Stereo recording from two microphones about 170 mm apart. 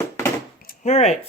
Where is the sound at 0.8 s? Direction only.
40° left (ahead or behind).